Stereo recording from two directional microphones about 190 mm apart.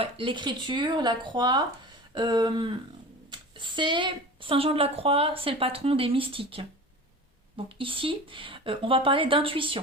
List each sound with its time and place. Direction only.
0.0 s speech: 25° right (ahead or behind)